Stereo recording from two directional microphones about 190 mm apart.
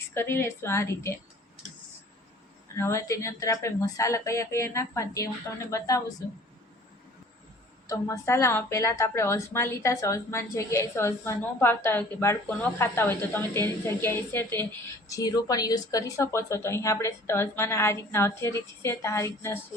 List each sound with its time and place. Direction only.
0.1 s a woman's voice: 10° left (ahead or behind)
2.7 s a woman's voice: 15° left (ahead or behind)
7.9 s a woman's voice: 15° left (ahead or behind)